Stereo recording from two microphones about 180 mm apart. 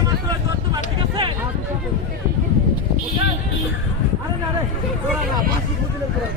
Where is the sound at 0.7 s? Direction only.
25° right (ahead or behind).